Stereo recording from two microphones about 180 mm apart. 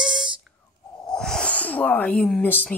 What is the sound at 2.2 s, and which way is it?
Speech, 10° left (ahead or behind).